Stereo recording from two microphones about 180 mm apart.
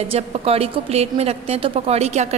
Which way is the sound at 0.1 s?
35° right (ahead or behind).